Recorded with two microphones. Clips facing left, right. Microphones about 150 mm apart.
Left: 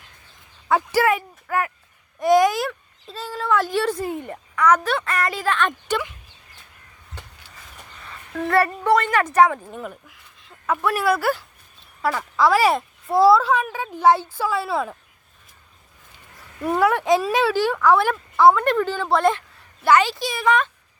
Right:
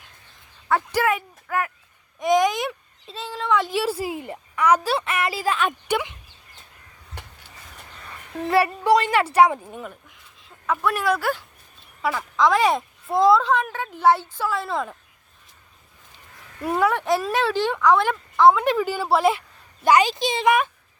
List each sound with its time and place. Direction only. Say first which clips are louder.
0.7 s a woman's voice: left 2 dB; 5° left (ahead or behind); by 4.9 s 10° right (ahead or behind)
4.9 s a woman's voice: even; 30° right (ahead or behind)
5.1 s speech: left 1 dB; 5° right (ahead or behind)
8.5 s speech: even; 10° right (ahead or behind)
9.7 s a sound: left 2 dB; centre (ahead or behind)
10.8 s speech: left 2 dB; 10° left (ahead or behind)
16.8 s speech: left 3 dB; 10° left (ahead or behind); by 19.4 s 5° right (ahead or behind)
19.8 s speech: even; 15° right (ahead or behind)